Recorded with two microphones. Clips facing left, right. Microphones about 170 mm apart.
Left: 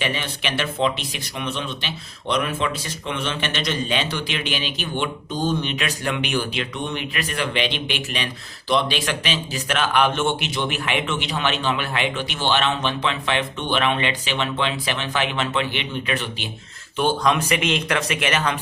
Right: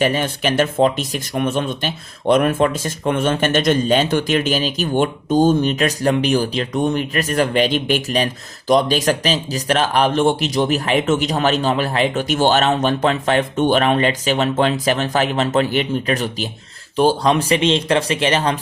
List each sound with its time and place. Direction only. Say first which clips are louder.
0.0 s speech: right 8 dB; 45° right (ahead or behind)